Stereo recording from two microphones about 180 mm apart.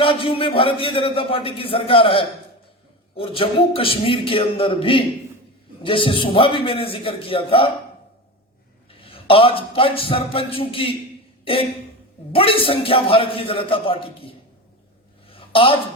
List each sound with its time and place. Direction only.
0.0 s a man's voice: 30° left (ahead or behind)
8.9 s a man's voice: 30° left (ahead or behind)
12.3 s a man's voice: 30° left (ahead or behind)
15.3 s a sound: 30° left (ahead or behind)